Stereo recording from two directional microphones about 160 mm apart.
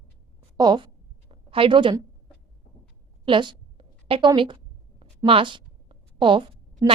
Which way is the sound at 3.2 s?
30° right (ahead or behind).